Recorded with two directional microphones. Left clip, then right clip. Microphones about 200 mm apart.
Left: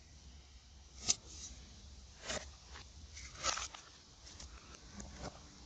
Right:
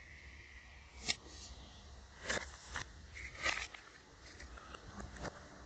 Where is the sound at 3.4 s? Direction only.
25° right (ahead or behind).